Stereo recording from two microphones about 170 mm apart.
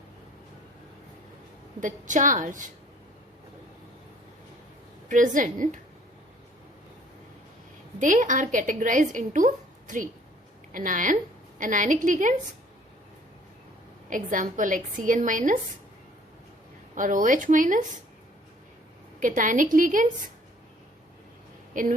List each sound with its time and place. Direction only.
1.8 s a woman's voice: 50° right (ahead or behind)
5.0 s a woman's voice: 50° right (ahead or behind)
7.9 s a woman's voice: 50° right (ahead or behind)
14.1 s a woman's voice: 50° right (ahead or behind)
16.9 s a woman's voice: 50° right (ahead or behind)
19.2 s a woman's voice: 50° right (ahead or behind)
21.7 s speech: 50° right (ahead or behind)